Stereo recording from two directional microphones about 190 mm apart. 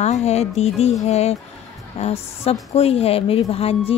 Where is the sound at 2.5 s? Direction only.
30° left (ahead or behind).